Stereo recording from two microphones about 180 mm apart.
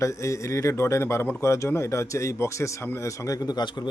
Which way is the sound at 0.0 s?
15° left (ahead or behind).